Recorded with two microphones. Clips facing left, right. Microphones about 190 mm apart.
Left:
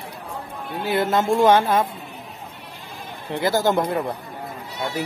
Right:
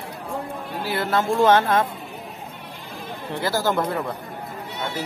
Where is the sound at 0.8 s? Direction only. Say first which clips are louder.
Left 3 dB; 20° left (ahead or behind).